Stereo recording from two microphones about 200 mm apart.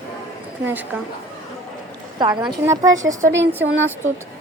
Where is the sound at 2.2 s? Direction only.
20° right (ahead or behind).